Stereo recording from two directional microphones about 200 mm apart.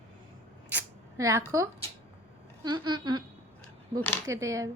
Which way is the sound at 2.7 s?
20° right (ahead or behind).